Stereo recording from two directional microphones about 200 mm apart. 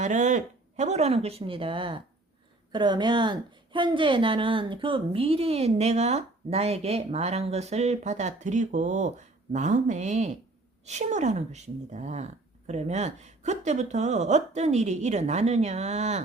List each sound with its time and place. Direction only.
0.0 s a woman's voice: 35° right (ahead or behind)